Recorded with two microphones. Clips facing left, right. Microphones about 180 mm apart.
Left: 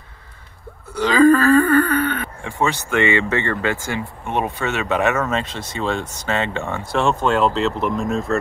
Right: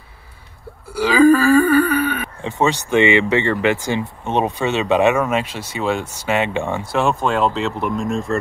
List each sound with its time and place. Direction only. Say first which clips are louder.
0.9 s wail: right 1 dB; 10° right (ahead or behind)
2.4 s speech: right 4 dB; 20° right (ahead or behind)
6.9 s speech: left 1 dB; 5° right (ahead or behind)